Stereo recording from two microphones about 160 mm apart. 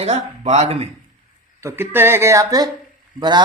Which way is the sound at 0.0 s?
45° right (ahead or behind).